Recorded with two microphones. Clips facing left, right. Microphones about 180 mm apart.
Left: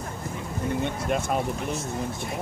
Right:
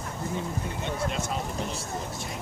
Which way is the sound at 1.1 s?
55° left (ahead or behind).